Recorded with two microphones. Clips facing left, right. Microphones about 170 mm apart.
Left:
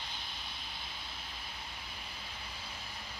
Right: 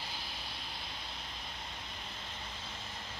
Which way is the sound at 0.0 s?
Centre (ahead or behind).